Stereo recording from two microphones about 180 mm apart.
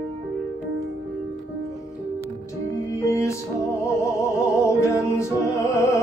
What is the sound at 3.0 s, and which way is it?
Music, 15° left (ahead or behind).